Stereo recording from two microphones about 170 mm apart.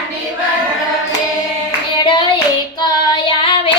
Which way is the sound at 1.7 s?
25° left (ahead or behind).